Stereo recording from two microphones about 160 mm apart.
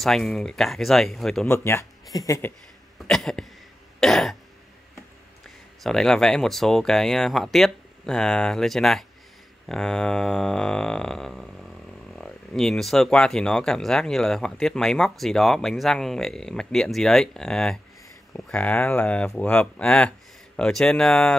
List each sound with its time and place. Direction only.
0.0 s speech: centre (ahead or behind)
1.5 s speech: 15° left (ahead or behind)
3.1 s speech: 5° left (ahead or behind)
5.8 s speech: 5° left (ahead or behind)